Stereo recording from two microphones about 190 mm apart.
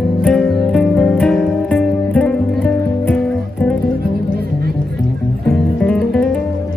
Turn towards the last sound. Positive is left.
turn(degrees=5)  # may be behind; listen again after turning